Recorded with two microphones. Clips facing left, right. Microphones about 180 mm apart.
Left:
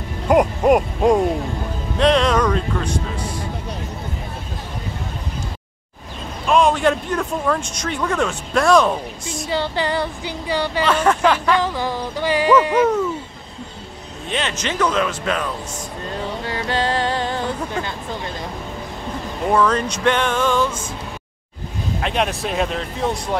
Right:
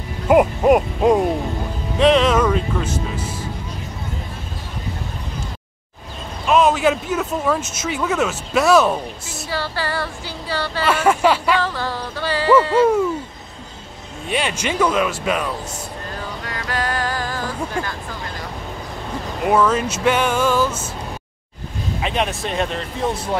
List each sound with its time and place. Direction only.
0.3 s speech: 5° right (ahead or behind)
6.4 s speech: 5° right (ahead or behind)
9.5 s a sound: 20° left (ahead or behind)
10.9 s speech: 10° right (ahead or behind)
11.6 s music: 15° left (ahead or behind)
12.8 s speech: 10° right (ahead or behind)
14.3 s speech: 10° right (ahead or behind)
16.4 s music: 25° left (ahead or behind)
19.5 s speech: 5° right (ahead or behind)
22.0 s speech: centre (ahead or behind)